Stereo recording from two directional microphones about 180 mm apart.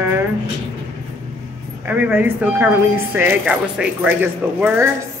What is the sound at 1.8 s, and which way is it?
Speech, 10° right (ahead or behind).